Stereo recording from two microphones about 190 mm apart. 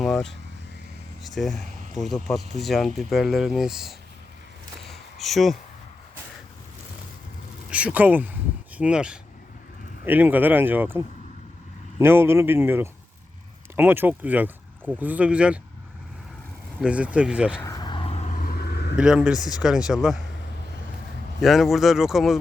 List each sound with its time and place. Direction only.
0.0 s vehicle: centre (ahead or behind)
1.2 s speech: centre (ahead or behind)
4.9 s a sound: centre (ahead or behind)
7.7 s a man's voice: 5° right (ahead or behind)
16.8 s speech: 5° right (ahead or behind)
17.6 s vehicle: 20° left (ahead or behind)
18.4 s vehicle: 55° left (ahead or behind)
18.9 s speech: 5° right (ahead or behind)
21.4 s speech: centre (ahead or behind)